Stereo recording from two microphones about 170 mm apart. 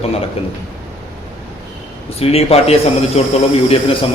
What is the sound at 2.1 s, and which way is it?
A man's voice, 35° left (ahead or behind).